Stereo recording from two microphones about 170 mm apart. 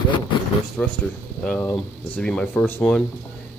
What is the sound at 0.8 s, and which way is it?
Speech, 5° left (ahead or behind).